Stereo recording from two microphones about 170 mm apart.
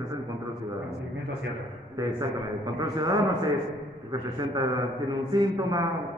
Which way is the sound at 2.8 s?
25° right (ahead or behind).